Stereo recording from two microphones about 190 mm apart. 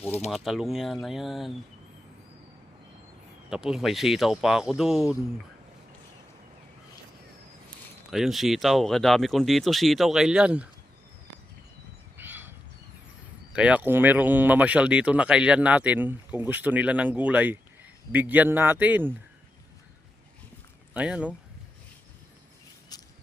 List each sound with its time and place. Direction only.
0.3 s speech: centre (ahead or behind)
3.5 s speech: centre (ahead or behind)
8.1 s speech: centre (ahead or behind)
12.1 s a sound: 10° right (ahead or behind)
13.5 s speech: 5° right (ahead or behind)
20.9 s speech: 5° right (ahead or behind)
22.9 s a sound: 20° left (ahead or behind)